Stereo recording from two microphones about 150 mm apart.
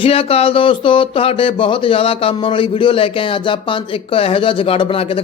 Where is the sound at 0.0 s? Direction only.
40° left (ahead or behind).